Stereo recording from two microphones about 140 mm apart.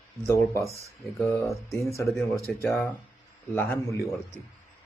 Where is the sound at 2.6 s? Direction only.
15° left (ahead or behind).